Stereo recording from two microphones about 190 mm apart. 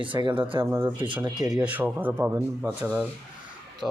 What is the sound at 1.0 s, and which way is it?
Speech, 25° right (ahead or behind).